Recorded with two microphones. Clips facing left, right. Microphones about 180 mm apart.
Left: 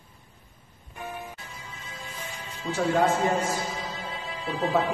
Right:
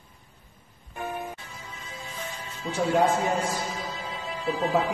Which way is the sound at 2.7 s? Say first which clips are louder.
Even; 15° right (ahead or behind).